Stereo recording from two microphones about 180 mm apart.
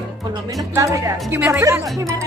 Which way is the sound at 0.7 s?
15° right (ahead or behind).